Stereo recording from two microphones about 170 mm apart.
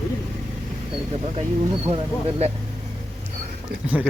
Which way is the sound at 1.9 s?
35° right (ahead or behind).